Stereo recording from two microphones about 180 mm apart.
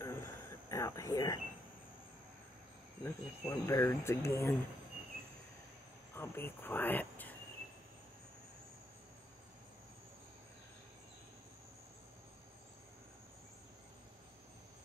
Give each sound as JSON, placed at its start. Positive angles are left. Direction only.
{"t": 0.0, "sound": "a sound", "side_deg": 15}
{"t": 3.0, "sound": "speech", "side_deg": 15}
{"t": 6.1, "sound": "speech", "side_deg": 10}